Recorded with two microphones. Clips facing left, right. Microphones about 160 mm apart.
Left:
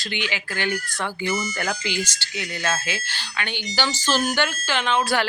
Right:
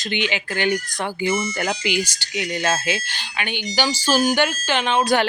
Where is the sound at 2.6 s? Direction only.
25° right (ahead or behind).